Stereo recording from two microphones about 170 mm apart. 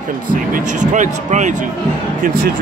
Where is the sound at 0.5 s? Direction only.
45° right (ahead or behind).